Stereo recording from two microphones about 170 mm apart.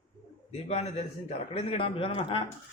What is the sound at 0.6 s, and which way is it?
Speech, 40° left (ahead or behind).